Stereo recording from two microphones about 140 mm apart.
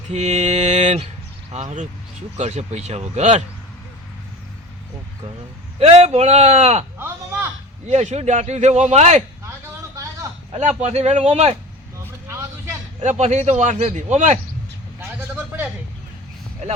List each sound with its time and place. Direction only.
0.1 s mantra: 50° right (ahead or behind)
1.5 s a man's voice: 55° right (ahead or behind)
5.8 s a man's voice: 45° right (ahead or behind)
7.0 s a sound: 15° right (ahead or behind)
7.9 s a man's voice: 50° right (ahead or behind)
9.9 s a sound: 25° right (ahead or behind)
10.6 s a man's voice: 55° right (ahead or behind)
12.3 s vehicle: 20° right (ahead or behind)
13.0 s a man's voice: 55° right (ahead or behind)
15.4 s vehicle: 15° right (ahead or behind)